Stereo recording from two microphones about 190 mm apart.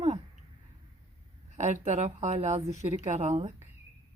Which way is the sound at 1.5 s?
35° right (ahead or behind).